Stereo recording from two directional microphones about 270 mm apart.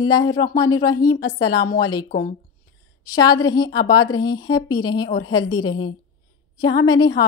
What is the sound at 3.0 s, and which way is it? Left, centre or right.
A woman's voice, centre.